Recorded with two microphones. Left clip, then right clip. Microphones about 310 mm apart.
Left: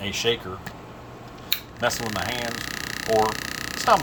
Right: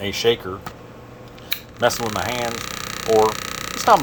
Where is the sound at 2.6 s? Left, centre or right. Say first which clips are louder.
Right 2 dB; centre.